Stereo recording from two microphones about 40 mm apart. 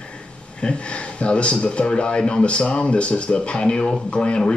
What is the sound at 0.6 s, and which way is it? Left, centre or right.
Speech, left.